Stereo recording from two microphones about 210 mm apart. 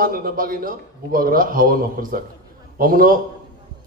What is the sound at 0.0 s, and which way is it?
A man's voice, 45° right (ahead or behind).